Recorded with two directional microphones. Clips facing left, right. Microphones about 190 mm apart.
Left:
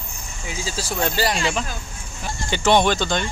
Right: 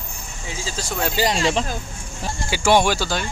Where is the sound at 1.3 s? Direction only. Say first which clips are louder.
Right 3 dB; 30° right (ahead or behind).